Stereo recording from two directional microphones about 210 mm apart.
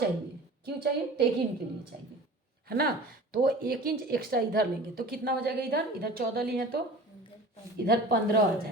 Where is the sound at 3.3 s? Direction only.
45° right (ahead or behind).